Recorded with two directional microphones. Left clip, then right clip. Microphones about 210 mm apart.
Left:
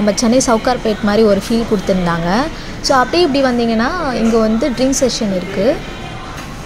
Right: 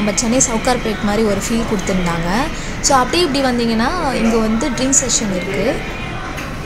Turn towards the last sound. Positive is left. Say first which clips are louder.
# left 2 dB
turn(degrees=15)  # may be behind; listen again after turning